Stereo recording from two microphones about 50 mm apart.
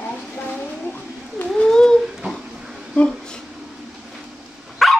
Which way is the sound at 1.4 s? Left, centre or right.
Centre.